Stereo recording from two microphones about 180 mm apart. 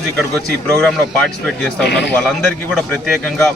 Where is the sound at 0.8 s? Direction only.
5° left (ahead or behind).